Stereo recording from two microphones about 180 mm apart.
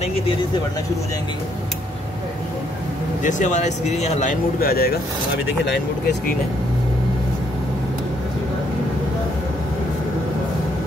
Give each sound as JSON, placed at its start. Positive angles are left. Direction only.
{"t": 3.3, "sound": "speech", "side_deg": 45}